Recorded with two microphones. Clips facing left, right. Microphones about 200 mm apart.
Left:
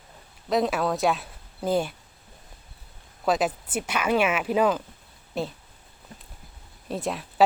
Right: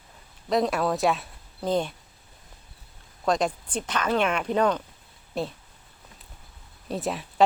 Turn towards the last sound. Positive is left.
turn(degrees=0)  # may be behind; listen again after turning